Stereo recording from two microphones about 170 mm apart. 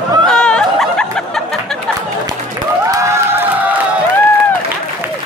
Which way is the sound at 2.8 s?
20° right (ahead or behind).